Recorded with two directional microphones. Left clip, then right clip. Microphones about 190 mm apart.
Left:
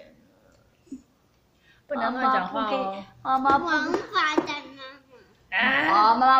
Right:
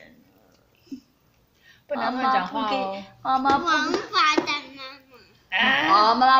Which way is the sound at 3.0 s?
50° right (ahead or behind).